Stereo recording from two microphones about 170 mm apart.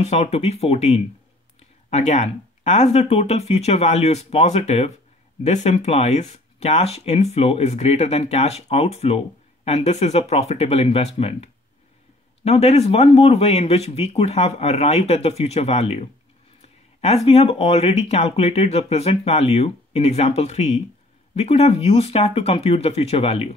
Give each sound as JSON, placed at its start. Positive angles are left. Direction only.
{"t": 0.0, "sound": "speech", "side_deg": 40}